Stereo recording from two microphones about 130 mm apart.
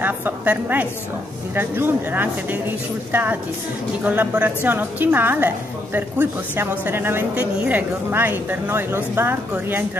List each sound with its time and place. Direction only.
0.0 s a woman's voice: 15° right (ahead or behind)